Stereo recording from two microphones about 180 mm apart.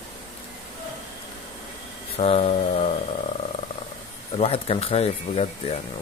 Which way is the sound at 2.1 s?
35° left (ahead or behind).